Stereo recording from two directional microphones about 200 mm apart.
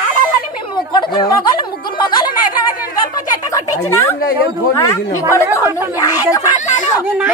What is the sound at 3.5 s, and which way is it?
Speech, 15° left (ahead or behind).